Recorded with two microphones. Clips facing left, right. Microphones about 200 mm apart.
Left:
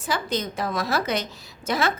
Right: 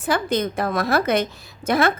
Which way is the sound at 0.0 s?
55° right (ahead or behind).